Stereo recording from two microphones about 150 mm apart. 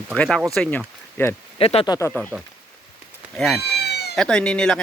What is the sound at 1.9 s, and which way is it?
Speech, 20° left (ahead or behind).